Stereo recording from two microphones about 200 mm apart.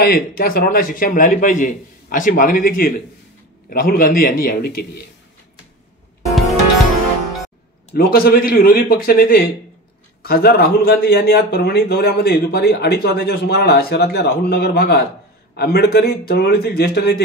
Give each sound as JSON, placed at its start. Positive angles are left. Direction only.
{"t": 0.0, "sound": "a man's voice", "side_deg": 50}
{"t": 7.9, "sound": "a man's voice", "side_deg": 50}